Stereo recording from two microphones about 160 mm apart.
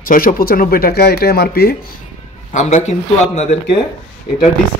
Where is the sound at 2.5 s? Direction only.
45° left (ahead or behind).